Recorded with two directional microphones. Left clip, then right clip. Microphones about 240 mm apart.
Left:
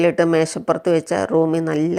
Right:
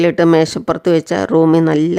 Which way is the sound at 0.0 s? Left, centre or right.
Right.